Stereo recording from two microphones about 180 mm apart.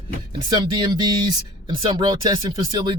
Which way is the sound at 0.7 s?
25° right (ahead or behind).